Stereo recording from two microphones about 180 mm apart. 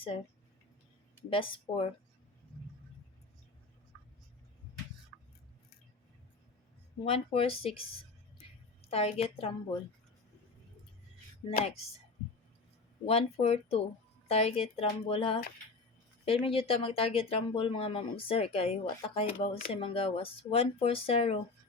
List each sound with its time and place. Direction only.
1.3 s speech: 30° left (ahead or behind)
7.0 s speech: 30° left (ahead or behind)
8.9 s speech: 35° left (ahead or behind)
13.1 s speech: 35° left (ahead or behind)